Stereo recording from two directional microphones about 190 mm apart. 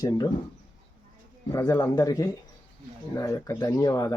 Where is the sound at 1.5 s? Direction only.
20° left (ahead or behind).